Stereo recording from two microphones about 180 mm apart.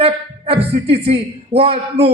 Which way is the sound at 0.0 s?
35° right (ahead or behind).